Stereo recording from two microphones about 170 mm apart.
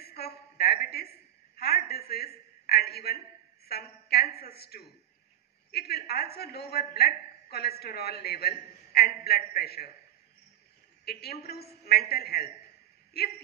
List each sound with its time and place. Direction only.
0.0 s a sound: 65° left (ahead or behind)
3.6 s a man's voice: 65° left (ahead or behind)
11.1 s a woman's voice: 70° left (ahead or behind)